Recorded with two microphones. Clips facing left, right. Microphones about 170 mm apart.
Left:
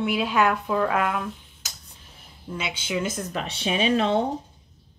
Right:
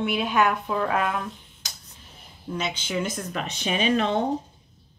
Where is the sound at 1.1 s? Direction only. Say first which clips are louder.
Left 1 dB; centre (ahead or behind).